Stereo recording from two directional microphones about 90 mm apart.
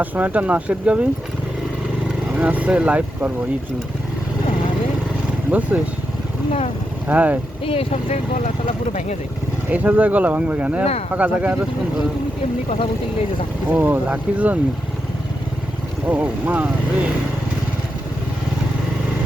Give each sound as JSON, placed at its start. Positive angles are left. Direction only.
{"t": 0.0, "sound": "speech", "side_deg": -20}
{"t": 2.3, "sound": "speech", "side_deg": -15}
{"t": 5.5, "sound": "speech", "side_deg": -15}
{"t": 7.1, "sound": "speech", "side_deg": -15}
{"t": 7.6, "sound": "speech", "side_deg": 90}
{"t": 9.6, "sound": "speech", "side_deg": -15}
{"t": 13.7, "sound": "speech", "side_deg": -20}
{"t": 16.0, "sound": "speech", "side_deg": -15}